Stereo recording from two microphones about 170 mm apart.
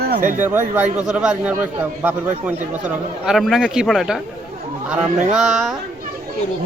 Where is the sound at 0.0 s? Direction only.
60° right (ahead or behind).